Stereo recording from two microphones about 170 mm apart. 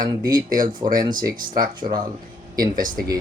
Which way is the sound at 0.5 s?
50° right (ahead or behind).